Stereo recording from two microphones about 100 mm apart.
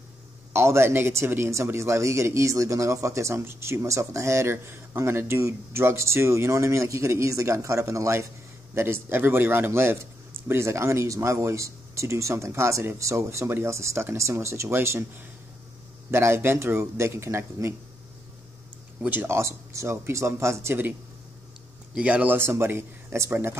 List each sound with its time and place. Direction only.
0.5 s speech: 25° right (ahead or behind)
19.0 s speech: 20° right (ahead or behind)
21.9 s speech: 15° right (ahead or behind)